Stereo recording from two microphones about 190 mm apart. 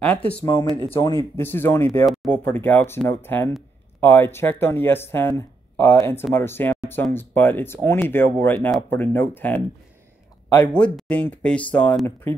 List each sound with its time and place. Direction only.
0.0 s speech: 5° left (ahead or behind)
0.4 s speech: 20° left (ahead or behind)